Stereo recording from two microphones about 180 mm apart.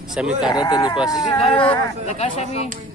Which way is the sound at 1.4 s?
30° left (ahead or behind).